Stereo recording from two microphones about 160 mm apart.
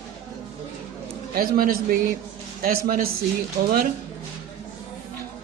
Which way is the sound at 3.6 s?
90° right.